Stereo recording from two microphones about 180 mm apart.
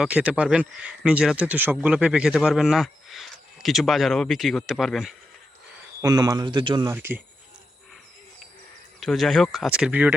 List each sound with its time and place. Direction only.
0.0 s speech: 5° right (ahead or behind)
6.0 s speech: 20° right (ahead or behind)
6.9 s speech: 10° right (ahead or behind)
9.0 s speech: centre (ahead or behind)